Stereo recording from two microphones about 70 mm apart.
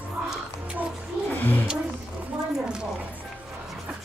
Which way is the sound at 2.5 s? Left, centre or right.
Centre.